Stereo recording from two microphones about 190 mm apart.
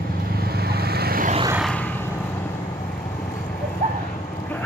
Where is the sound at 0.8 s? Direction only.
55° right (ahead or behind).